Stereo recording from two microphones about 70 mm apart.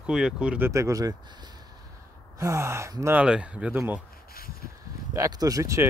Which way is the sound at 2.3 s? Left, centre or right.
Right.